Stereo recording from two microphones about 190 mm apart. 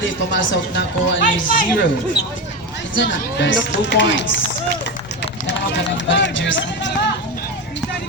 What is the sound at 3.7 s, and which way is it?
Speech, 65° left (ahead or behind).